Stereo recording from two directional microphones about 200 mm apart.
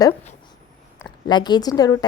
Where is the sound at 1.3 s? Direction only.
20° left (ahead or behind).